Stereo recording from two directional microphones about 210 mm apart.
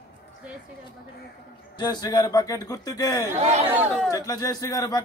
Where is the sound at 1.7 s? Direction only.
20° left (ahead or behind).